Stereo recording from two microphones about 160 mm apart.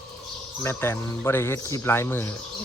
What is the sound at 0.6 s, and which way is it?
Speech, 15° left (ahead or behind).